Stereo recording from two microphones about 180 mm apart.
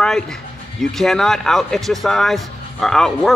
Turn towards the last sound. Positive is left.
turn(degrees=0)  # may be behind; listen again after turning